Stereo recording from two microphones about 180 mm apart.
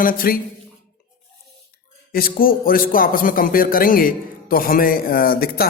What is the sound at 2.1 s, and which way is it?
A man's voice, 55° left (ahead or behind).